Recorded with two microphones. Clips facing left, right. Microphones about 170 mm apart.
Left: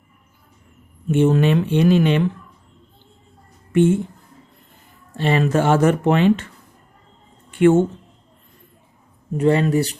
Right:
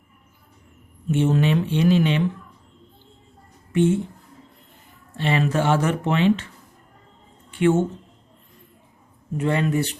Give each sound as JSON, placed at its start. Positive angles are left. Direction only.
{"t": 1.1, "sound": "speech", "side_deg": 50}
{"t": 3.7, "sound": "a woman's voice", "side_deg": 55}
{"t": 5.1, "sound": "speech", "side_deg": 40}
{"t": 7.5, "sound": "speech", "side_deg": 50}
{"t": 9.4, "sound": "speech", "side_deg": 35}